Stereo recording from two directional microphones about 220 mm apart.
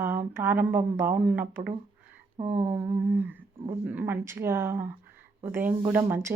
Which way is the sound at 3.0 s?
10° right (ahead or behind).